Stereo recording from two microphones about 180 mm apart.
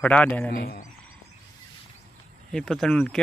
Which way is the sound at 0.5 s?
55° left (ahead or behind).